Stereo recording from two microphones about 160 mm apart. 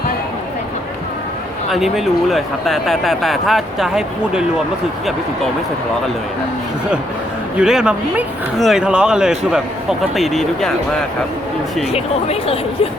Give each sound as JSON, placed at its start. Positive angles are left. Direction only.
{"t": 1.7, "sound": "speech", "side_deg": 0}
{"t": 7.6, "sound": "speech", "side_deg": -5}
{"t": 11.9, "sound": "speech", "side_deg": 40}